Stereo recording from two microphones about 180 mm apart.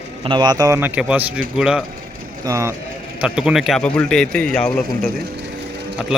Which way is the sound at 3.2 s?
5° right (ahead or behind).